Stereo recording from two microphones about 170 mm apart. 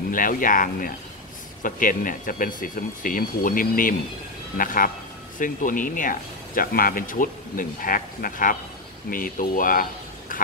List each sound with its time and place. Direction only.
0.1 s speech: 55° left (ahead or behind)